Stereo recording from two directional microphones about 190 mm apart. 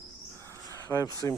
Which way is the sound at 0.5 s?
15° left (ahead or behind).